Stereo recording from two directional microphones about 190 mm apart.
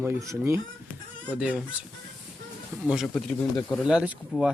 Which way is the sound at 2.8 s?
5° right (ahead or behind).